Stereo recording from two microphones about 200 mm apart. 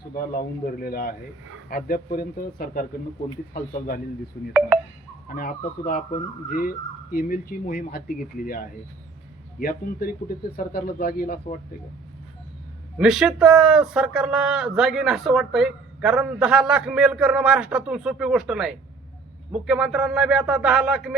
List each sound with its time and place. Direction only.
0.1 s speech: 45° left (ahead or behind)
13.0 s speech: centre (ahead or behind)